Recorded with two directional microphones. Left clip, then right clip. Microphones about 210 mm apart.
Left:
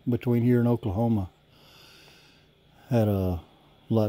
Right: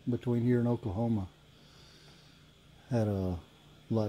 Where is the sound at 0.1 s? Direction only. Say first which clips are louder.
Left 6 dB; 45° left (ahead or behind).